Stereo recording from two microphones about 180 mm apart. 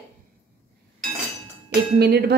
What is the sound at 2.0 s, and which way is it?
Speech, 65° right (ahead or behind).